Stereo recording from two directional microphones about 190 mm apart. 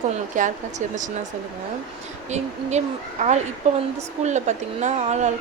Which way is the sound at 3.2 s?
40° right (ahead or behind).